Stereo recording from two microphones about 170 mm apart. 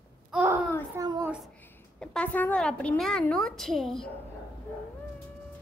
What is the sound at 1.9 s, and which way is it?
A woman's voice, 10° left (ahead or behind).